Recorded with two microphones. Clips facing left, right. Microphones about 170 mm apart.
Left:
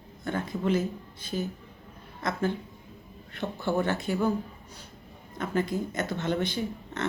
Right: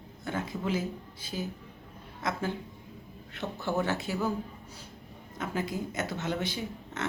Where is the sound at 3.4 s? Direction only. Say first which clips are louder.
Left 3 dB; 15° left (ahead or behind).